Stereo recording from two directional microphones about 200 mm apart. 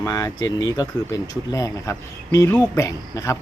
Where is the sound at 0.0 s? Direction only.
20° left (ahead or behind).